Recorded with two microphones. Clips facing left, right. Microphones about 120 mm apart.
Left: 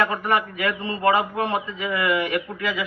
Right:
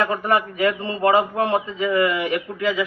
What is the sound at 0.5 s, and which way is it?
A man's voice, 35° right (ahead or behind).